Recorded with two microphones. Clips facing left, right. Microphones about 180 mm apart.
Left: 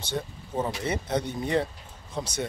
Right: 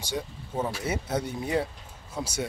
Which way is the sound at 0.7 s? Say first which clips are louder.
Left 1 dB; 5° right (ahead or behind).